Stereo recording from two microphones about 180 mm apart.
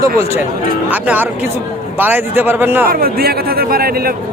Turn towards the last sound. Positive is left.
turn(degrees=-55)  # may be behind; listen again after turning